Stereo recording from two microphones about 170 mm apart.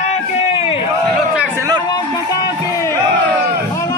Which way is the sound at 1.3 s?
10° right (ahead or behind).